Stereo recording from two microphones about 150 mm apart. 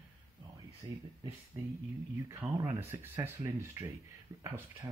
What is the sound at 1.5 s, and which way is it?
Speech, 15° right (ahead or behind).